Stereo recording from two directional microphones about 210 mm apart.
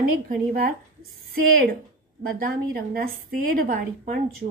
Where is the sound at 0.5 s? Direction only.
45° right (ahead or behind).